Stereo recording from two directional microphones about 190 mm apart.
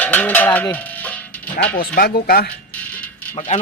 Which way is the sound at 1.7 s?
50° left (ahead or behind).